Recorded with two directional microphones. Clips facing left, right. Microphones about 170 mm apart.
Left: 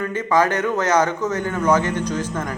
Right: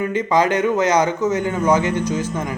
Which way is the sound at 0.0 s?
15° right (ahead or behind).